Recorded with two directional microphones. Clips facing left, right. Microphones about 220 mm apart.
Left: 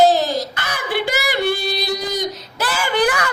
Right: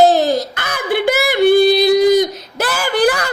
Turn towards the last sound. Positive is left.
turn(degrees=-35)  # may be behind; listen again after turning